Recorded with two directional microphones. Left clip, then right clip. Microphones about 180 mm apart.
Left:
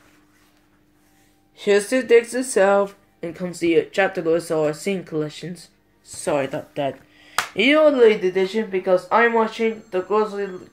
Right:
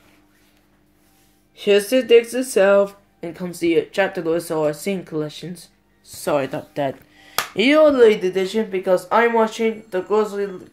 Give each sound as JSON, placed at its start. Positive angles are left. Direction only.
{"t": 1.6, "sound": "speech", "side_deg": -15}